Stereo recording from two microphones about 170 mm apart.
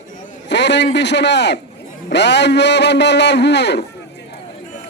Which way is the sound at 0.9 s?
90° left.